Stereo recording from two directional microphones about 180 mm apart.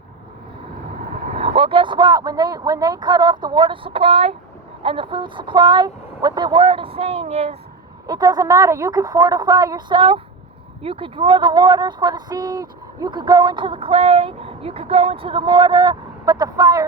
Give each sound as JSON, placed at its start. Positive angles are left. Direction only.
{"t": 1.3, "sound": "speech", "side_deg": -35}
{"t": 8.0, "sound": "speech", "side_deg": -20}